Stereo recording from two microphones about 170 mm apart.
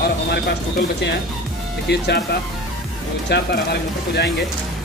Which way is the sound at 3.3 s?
75° left (ahead or behind).